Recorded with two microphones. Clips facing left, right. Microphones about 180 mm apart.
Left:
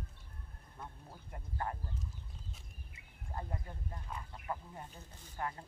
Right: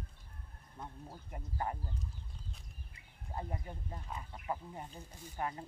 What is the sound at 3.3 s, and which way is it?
Speech, 20° right (ahead or behind).